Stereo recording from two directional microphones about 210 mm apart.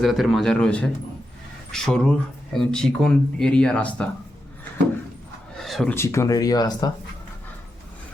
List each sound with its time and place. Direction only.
0.0 s speech: centre (ahead or behind)
5.5 s a sound: centre (ahead or behind)
5.9 s speech: 10° left (ahead or behind)